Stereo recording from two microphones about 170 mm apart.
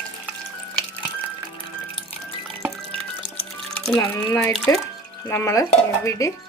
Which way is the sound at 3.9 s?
20° left (ahead or behind).